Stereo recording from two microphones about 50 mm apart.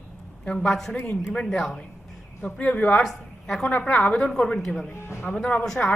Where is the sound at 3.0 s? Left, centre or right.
Centre.